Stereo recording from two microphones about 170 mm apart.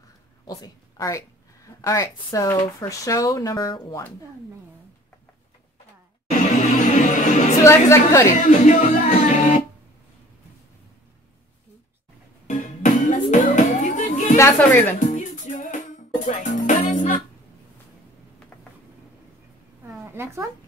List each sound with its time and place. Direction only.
0.5 s a woman's voice: 20° left (ahead or behind)
6.3 s music: 45° left (ahead or behind)
7.6 s a woman's voice: 15° left (ahead or behind)
8.4 s music: 45° left (ahead or behind)
12.4 s music: 45° left (ahead or behind)
14.3 s a woman's voice: 15° left (ahead or behind)
15.0 s music: 50° left (ahead or behind)
19.9 s a sound: 15° right (ahead or behind)